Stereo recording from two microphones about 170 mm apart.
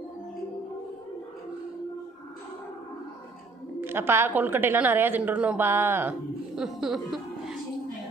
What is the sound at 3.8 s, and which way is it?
A woman's voice, 15° right (ahead or behind).